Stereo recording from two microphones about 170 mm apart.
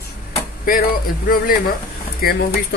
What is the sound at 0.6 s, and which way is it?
Speech, 55° left (ahead or behind).